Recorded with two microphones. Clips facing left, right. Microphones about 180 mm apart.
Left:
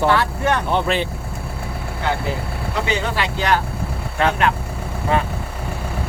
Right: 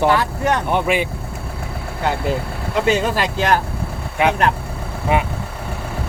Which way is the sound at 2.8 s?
45° right (ahead or behind).